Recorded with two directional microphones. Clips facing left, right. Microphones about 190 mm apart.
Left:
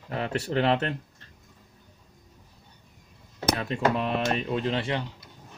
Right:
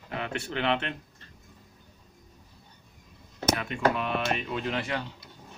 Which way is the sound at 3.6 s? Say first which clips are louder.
Left 3 dB; 35° left (ahead or behind).